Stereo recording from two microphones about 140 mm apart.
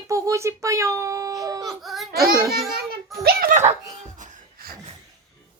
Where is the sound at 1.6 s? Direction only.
Centre (ahead or behind).